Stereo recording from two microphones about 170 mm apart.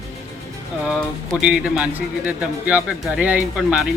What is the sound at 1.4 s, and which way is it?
A man's voice, 5° right (ahead or behind).